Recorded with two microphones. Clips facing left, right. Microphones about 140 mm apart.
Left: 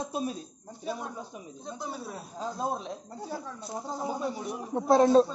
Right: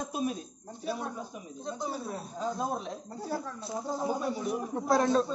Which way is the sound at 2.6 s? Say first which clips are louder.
Left 1 dB; 20° left (ahead or behind).